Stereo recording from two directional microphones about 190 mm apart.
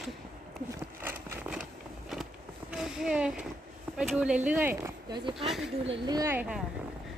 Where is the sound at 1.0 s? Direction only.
10° right (ahead or behind).